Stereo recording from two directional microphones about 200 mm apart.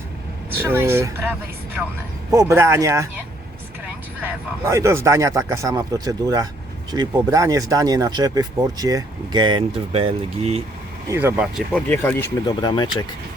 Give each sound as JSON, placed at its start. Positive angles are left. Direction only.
{"t": 0.6, "sound": "a man's voice", "side_deg": -10}
{"t": 2.3, "sound": "a man's voice", "side_deg": -15}
{"t": 4.2, "sound": "a man's voice", "side_deg": -15}
{"t": 11.1, "sound": "a man's voice", "side_deg": -10}
{"t": 11.7, "sound": "speech", "side_deg": 10}